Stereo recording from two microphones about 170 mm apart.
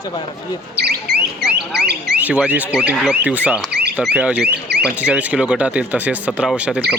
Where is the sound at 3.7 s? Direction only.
75° right (ahead or behind).